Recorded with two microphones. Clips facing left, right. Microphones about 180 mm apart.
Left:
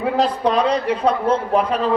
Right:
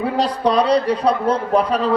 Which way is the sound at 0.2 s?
35° right (ahead or behind).